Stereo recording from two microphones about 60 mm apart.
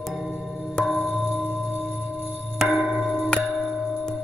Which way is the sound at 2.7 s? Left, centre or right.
Left.